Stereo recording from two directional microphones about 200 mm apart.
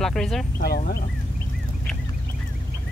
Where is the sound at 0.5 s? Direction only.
50° left (ahead or behind).